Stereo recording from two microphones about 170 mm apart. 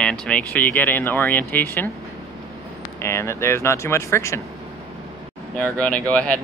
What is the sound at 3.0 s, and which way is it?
Speech, 15° left (ahead or behind).